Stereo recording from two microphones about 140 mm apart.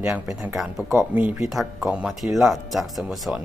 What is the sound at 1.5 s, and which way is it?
Speech, 5° right (ahead or behind).